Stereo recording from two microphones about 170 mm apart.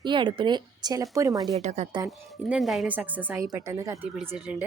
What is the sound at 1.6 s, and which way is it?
Speech, 45° right (ahead or behind).